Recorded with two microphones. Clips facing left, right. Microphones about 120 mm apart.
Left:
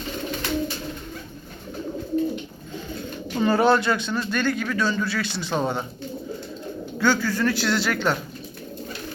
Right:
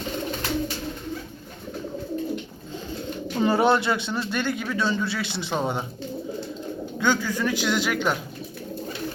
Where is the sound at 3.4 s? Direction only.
20° right (ahead or behind).